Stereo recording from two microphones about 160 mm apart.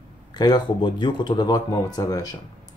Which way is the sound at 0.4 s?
25° left (ahead or behind).